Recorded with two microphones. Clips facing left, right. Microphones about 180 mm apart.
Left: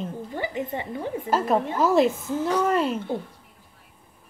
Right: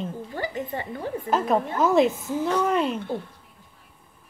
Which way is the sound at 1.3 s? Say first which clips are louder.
Even; centre (ahead or behind).